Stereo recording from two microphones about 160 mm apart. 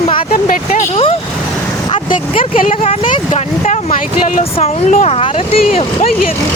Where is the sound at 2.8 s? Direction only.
40° left (ahead or behind).